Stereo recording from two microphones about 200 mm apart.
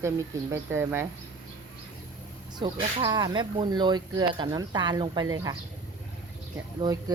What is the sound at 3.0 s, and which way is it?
Speech, 20° right (ahead or behind).